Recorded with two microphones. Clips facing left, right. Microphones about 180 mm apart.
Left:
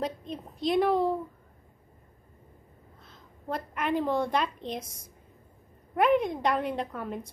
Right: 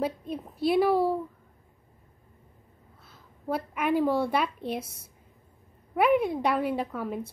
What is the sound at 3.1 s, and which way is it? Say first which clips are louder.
A woman's voice: right 4 dB; 5° right (ahead or behind).